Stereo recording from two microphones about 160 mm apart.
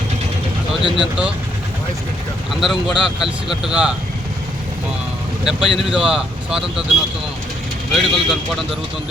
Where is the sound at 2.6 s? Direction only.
Centre (ahead or behind).